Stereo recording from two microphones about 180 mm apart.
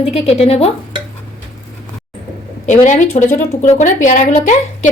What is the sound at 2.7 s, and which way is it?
A woman's voice, 40° left (ahead or behind).